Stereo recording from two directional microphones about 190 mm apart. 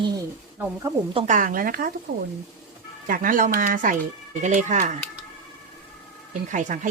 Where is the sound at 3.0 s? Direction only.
45° right (ahead or behind).